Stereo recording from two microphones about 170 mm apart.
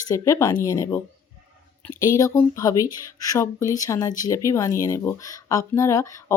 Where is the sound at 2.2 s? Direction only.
20° left (ahead or behind).